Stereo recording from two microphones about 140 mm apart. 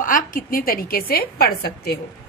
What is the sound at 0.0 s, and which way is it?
A woman's voice, 75° left (ahead or behind).